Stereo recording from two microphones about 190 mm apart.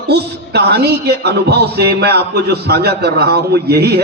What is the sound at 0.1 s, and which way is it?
A man's voice, 60° right (ahead or behind).